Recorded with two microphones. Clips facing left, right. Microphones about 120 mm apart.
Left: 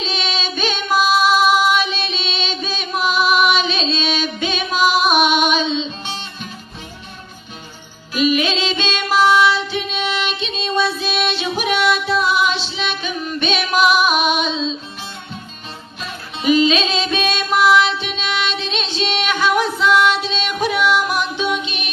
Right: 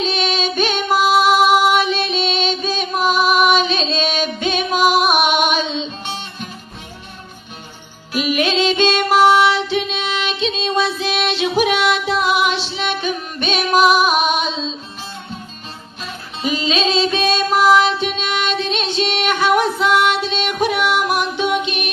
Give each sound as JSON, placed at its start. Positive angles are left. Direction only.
{"t": 0.2, "sound": "female singing", "side_deg": -50}
{"t": 8.2, "sound": "music", "side_deg": -60}
{"t": 10.6, "sound": "music", "side_deg": -90}
{"t": 12.5, "sound": "music", "side_deg": -50}
{"t": 16.4, "sound": "music", "side_deg": -35}